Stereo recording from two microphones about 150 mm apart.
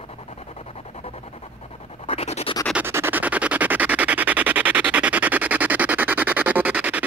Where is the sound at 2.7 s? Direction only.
15° right (ahead or behind).